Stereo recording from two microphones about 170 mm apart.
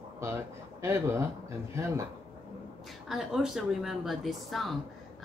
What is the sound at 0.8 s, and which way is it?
Speech, 15° right (ahead or behind).